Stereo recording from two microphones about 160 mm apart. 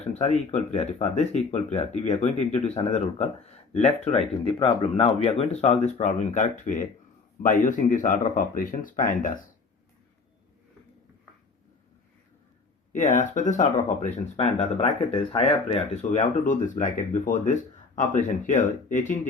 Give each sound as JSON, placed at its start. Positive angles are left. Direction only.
{"t": 0.0, "sound": "speech", "side_deg": 45}
{"t": 12.9, "sound": "speech", "side_deg": 50}